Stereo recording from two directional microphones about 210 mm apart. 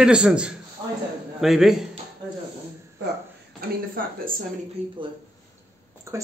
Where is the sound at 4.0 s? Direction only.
40° right (ahead or behind).